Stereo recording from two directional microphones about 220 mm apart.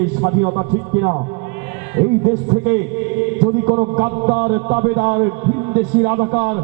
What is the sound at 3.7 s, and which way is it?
Speech, 25° right (ahead or behind).